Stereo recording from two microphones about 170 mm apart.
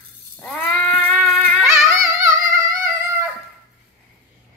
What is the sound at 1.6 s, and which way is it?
Music, 15° right (ahead or behind).